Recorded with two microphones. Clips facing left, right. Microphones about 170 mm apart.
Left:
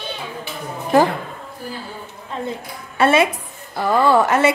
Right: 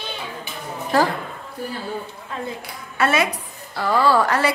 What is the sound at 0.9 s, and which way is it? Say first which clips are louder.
Speech: left 4 dB; 20° left (ahead or behind).